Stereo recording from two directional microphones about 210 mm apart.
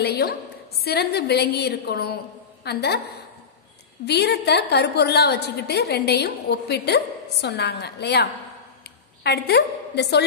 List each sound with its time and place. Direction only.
0.0 s a woman's voice: 50° left (ahead or behind)
4.0 s a woman's voice: 50° left (ahead or behind)